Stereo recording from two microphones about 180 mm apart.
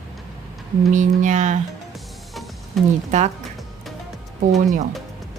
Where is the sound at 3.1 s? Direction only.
40° right (ahead or behind).